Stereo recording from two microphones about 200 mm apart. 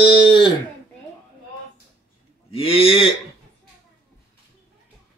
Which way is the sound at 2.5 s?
30° left (ahead or behind).